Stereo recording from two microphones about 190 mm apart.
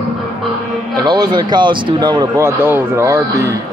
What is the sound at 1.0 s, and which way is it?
Speech, 20° right (ahead or behind).